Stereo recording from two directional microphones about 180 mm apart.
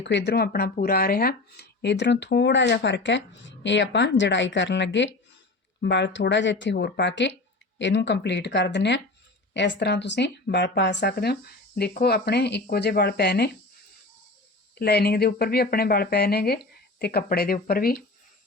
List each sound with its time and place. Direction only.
0.0 s speech: 75° left (ahead or behind)
5.8 s speech: 70° left (ahead or behind)
14.8 s speech: 60° left (ahead or behind)